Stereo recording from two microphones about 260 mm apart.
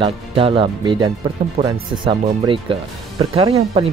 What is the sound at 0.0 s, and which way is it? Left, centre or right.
Speech, right.